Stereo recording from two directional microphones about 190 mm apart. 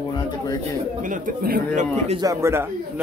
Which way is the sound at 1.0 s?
45° right (ahead or behind).